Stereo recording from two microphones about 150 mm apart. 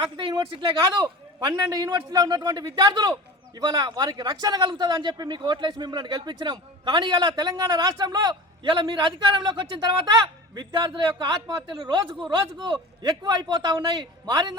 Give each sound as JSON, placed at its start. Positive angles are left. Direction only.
{"t": 0.2, "sound": "speech", "side_deg": -35}